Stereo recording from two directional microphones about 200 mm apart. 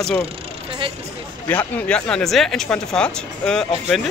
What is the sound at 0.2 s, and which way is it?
Vehicle, 25° right (ahead or behind).